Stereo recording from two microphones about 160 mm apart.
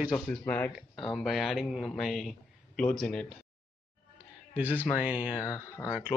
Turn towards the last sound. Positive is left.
turn(degrees=-10)  # may be behind; listen again after turning